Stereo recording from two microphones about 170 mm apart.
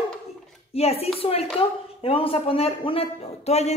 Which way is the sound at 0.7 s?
35° left (ahead or behind).